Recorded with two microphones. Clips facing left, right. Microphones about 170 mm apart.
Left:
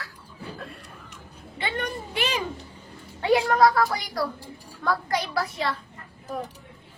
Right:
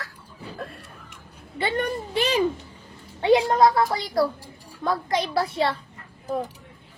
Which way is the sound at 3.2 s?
25° right (ahead or behind).